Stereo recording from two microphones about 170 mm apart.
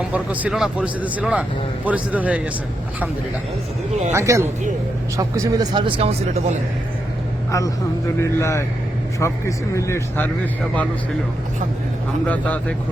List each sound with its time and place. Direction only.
0.1 s speech: 10° right (ahead or behind)
4.1 s speech: 15° right (ahead or behind); by 6.6 s 35° right (ahead or behind)
8.2 s speech: 15° left (ahead or behind)
12.3 s speech: 10° left (ahead or behind)